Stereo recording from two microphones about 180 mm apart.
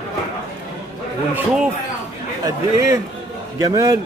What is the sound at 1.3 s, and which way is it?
Speech, 5° right (ahead or behind).